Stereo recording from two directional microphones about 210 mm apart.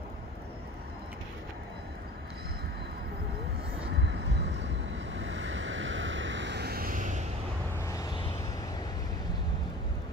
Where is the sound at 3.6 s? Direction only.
55° right (ahead or behind); by 7.2 s 35° right (ahead or behind).